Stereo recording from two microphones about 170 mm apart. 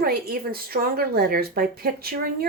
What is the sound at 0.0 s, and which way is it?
Speech, 60° right (ahead or behind).